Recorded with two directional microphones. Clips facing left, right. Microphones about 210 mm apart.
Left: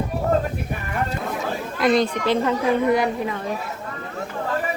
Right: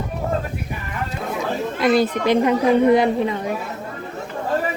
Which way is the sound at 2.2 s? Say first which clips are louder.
Right 4 dB; 15° right (ahead or behind).